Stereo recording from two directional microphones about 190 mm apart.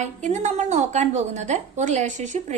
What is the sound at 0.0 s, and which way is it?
A woman's voice, 40° right (ahead or behind).